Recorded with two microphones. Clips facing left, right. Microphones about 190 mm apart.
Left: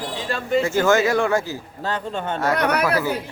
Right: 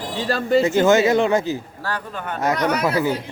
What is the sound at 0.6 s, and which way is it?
Speech, 20° right (ahead or behind).